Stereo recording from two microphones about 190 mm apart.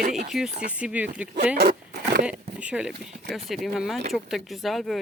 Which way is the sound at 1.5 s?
55° right (ahead or behind).